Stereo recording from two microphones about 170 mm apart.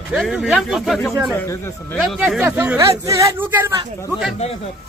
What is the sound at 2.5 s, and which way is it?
Speech, 15° right (ahead or behind).